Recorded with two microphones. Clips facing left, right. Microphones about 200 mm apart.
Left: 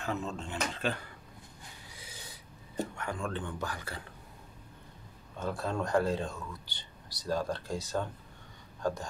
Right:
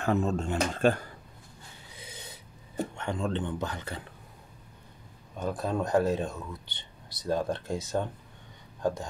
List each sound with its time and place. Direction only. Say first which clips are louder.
0.0 s speech: right 8 dB; 50° right (ahead or behind)
2.0 s a sound: right 6 dB; 20° right (ahead or behind)
3.0 s speech: right 5 dB; 25° right (ahead or behind)
5.4 s speech: right 3 dB; 15° right (ahead or behind)